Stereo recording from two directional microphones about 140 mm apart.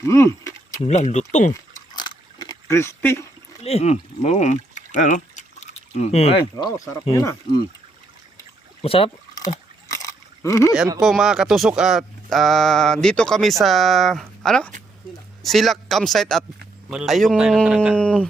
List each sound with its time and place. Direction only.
0.0 s speech: 20° left (ahead or behind)
0.9 s speech: 55° left (ahead or behind)
1.5 s liquid: 30° left (ahead or behind)
2.7 s speech: 20° left (ahead or behind)
3.6 s speech: 50° left (ahead or behind)
6.4 s speech: 30° left (ahead or behind)
8.8 s speech: 45° left (ahead or behind)
9.3 s a sound: 25° left (ahead or behind)
10.4 s speech: 20° left (ahead or behind)
11.0 s speech: 5° right (ahead or behind)
17.9 s speech: 10° left (ahead or behind)